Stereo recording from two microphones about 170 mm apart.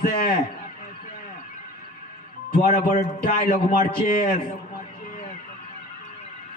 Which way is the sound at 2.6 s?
55° left (ahead or behind).